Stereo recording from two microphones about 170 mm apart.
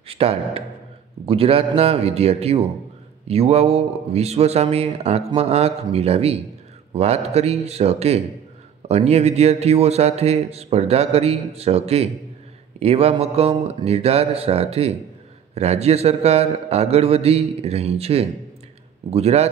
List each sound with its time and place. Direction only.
0.1 s a man's voice: 35° right (ahead or behind)